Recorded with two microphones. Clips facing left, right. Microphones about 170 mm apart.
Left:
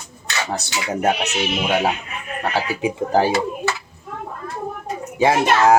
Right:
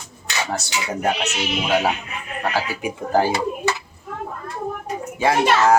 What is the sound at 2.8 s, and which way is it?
Speech, 20° left (ahead or behind).